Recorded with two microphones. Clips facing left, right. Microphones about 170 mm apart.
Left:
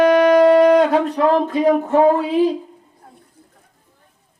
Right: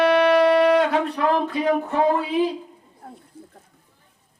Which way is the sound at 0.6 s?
40° left (ahead or behind).